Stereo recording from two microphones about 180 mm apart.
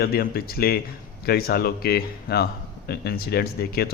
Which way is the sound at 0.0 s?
60° left (ahead or behind).